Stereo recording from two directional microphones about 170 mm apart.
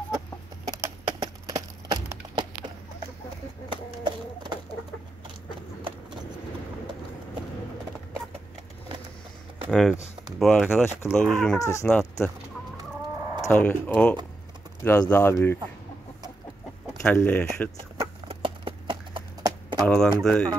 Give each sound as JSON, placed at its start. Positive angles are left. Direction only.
{"t": 0.7, "sound": "a sound", "side_deg": -15}
{"t": 1.2, "sound": "wood", "side_deg": -20}
{"t": 3.7, "sound": "a sound", "side_deg": -30}
{"t": 9.7, "sound": "speech", "side_deg": 0}
{"t": 11.6, "sound": "speech", "side_deg": 15}
{"t": 13.4, "sound": "speech", "side_deg": 10}
{"t": 17.0, "sound": "speech", "side_deg": 10}
{"t": 18.3, "sound": "clip-clop", "side_deg": -30}
{"t": 19.8, "sound": "speech", "side_deg": 0}